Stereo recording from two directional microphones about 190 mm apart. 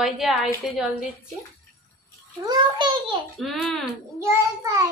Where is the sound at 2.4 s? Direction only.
20° right (ahead or behind).